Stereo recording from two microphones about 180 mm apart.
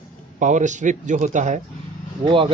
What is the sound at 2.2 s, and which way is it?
Speech, 30° right (ahead or behind).